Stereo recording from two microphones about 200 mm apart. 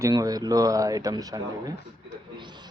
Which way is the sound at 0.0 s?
20° right (ahead or behind).